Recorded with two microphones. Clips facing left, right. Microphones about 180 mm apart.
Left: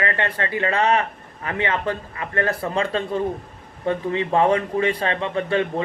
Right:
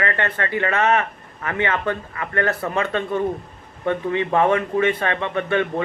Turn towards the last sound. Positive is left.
turn(degrees=30)  # may be behind; listen again after turning